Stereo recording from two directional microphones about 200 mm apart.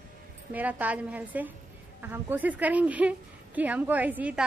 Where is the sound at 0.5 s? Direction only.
10° right (ahead or behind).